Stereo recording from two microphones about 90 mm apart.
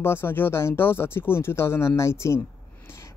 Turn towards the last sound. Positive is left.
turn(degrees=30)  # may be behind; listen again after turning